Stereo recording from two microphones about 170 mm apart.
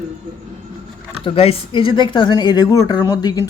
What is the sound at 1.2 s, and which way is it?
A man's voice, 35° left (ahead or behind).